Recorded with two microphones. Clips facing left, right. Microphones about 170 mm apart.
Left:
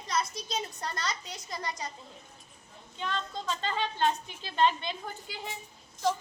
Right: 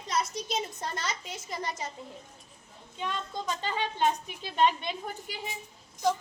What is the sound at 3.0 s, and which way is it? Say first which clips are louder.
A woman's voice: right 1 dB; 10° right (ahead or behind).